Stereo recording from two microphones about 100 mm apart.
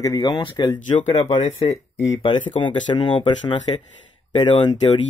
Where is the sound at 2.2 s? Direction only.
50° left (ahead or behind).